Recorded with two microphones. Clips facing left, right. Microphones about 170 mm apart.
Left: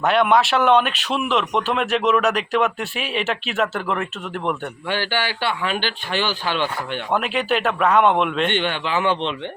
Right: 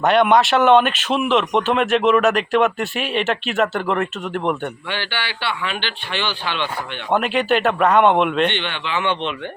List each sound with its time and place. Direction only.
0.0 s speech: centre (ahead or behind)
4.9 s a man's voice: 45° left (ahead or behind)
7.1 s speech: centre (ahead or behind)
8.4 s speech: 45° left (ahead or behind)